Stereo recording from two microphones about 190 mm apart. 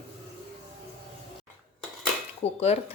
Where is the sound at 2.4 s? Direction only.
35° left (ahead or behind).